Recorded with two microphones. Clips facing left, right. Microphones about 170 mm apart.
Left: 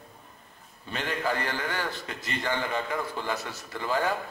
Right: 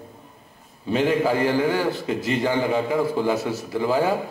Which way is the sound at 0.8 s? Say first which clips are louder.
Right 10 dB; 5° right (ahead or behind).